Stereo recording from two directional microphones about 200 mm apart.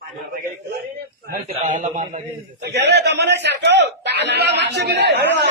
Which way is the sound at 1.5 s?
35° right (ahead or behind).